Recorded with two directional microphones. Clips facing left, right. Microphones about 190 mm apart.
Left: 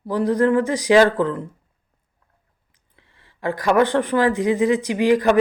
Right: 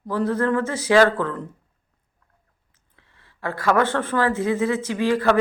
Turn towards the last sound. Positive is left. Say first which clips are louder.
# left 3 dB
turn(degrees=15)  # may be behind; listen again after turning